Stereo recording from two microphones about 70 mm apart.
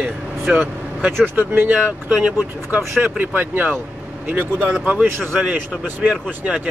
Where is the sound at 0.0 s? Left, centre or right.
Right.